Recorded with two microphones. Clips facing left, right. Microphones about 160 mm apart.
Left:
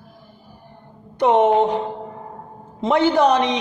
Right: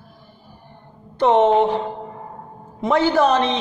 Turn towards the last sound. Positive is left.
turn(degrees=15)  # may be behind; listen again after turning